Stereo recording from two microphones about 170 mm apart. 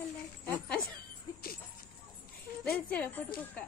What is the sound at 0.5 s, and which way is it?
Jingle bell, 5° left (ahead or behind).